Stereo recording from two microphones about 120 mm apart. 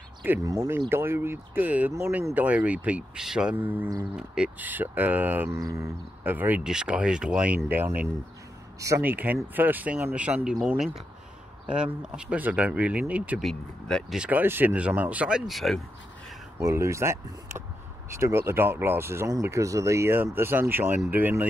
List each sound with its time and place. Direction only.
0.4 s speech: 30° right (ahead or behind)
5.6 s speech: 30° right (ahead or behind)
6.2 s speech: 15° right (ahead or behind)
8.7 s speech: 25° right (ahead or behind)
9.0 s speech: 15° right (ahead or behind)
11.6 s speech: 10° right (ahead or behind)
13.4 s speech: 5° left (ahead or behind)
14.1 s speech: 10° right (ahead or behind)
16.6 s speech: 25° right (ahead or behind)